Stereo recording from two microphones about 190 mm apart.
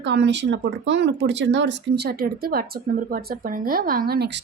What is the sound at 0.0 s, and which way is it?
Speech, 70° right (ahead or behind).